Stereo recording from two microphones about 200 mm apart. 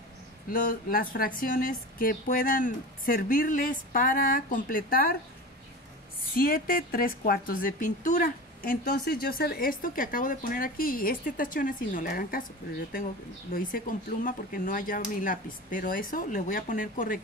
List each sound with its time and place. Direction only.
0.5 s a woman's voice: 45° left (ahead or behind)
6.3 s a woman's voice: 45° left (ahead or behind)
13.5 s a woman's voice: 45° left (ahead or behind)